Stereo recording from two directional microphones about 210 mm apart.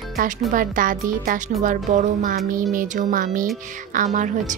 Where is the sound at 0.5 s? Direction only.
40° right (ahead or behind).